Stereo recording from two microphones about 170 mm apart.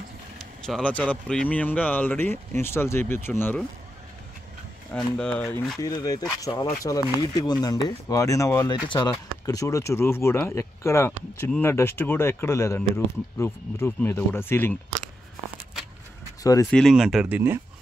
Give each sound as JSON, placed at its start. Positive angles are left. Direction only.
{"t": 0.7, "sound": "speech", "side_deg": 5}
{"t": 4.9, "sound": "speech", "side_deg": 5}
{"t": 5.8, "sound": "speech", "side_deg": 20}
{"t": 16.7, "sound": "speech", "side_deg": 0}